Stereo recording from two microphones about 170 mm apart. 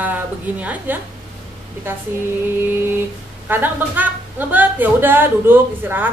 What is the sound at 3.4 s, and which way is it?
A woman's voice, 10° right (ahead or behind).